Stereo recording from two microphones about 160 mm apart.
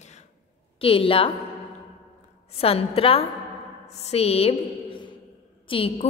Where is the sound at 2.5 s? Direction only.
40° left (ahead or behind).